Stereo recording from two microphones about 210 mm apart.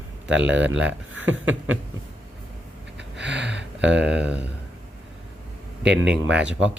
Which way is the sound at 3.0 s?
55° right (ahead or behind).